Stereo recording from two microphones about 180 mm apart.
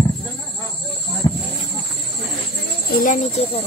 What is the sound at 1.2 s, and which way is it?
Insect, 20° left (ahead or behind).